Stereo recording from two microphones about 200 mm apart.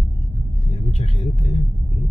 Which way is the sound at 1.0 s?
35° left (ahead or behind).